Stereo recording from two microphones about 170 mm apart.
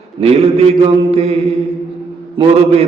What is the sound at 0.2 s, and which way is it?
A man's voice, 35° right (ahead or behind).